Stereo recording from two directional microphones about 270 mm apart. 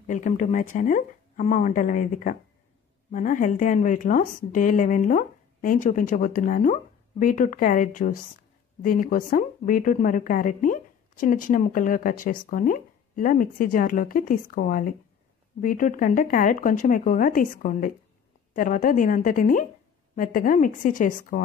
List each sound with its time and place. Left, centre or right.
0.0 s a woman's voice: left